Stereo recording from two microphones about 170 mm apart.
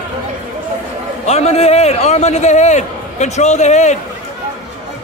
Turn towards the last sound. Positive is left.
turn(degrees=45)  # may be behind; listen again after turning